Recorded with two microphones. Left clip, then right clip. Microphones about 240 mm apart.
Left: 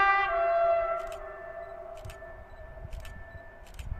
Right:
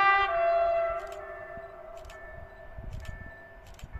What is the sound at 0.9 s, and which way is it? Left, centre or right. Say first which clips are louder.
Music: left 1 dB; left.